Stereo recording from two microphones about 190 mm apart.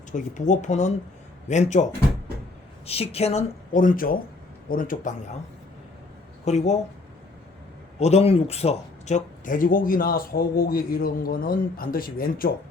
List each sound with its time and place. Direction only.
0.1 s speech: 40° left (ahead or behind)
6.4 s speech: 35° left (ahead or behind)
7.9 s speech: 35° left (ahead or behind); by 12.5 s 50° left (ahead or behind)